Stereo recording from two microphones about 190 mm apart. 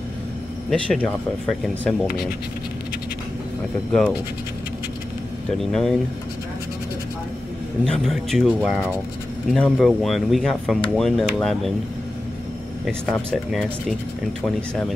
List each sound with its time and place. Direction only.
0.7 s speech: 5° left (ahead or behind)
5.6 s speech: 5° left (ahead or behind)
7.8 s speech: centre (ahead or behind)
12.8 s speech: 5° left (ahead or behind)